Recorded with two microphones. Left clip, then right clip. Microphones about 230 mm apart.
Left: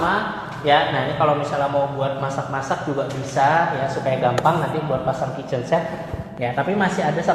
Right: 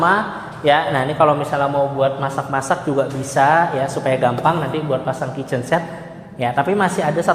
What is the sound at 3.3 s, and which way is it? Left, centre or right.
Speech, right.